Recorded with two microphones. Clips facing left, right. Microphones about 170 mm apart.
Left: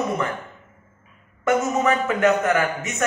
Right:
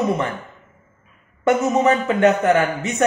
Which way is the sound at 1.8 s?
30° right (ahead or behind).